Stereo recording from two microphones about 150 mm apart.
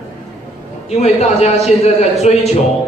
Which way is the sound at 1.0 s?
45° left (ahead or behind).